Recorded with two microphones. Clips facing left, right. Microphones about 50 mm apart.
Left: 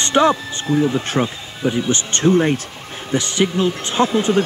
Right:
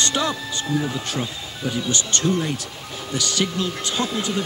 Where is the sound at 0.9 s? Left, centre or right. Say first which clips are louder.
Left 7 dB; left.